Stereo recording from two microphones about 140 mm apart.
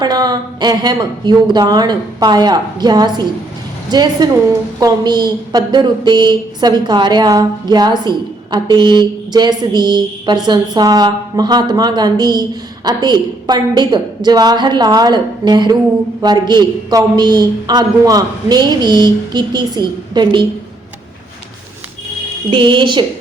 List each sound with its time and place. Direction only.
0.0 s a man's voice: 30° right (ahead or behind)
22.4 s a woman's voice: 35° right (ahead or behind)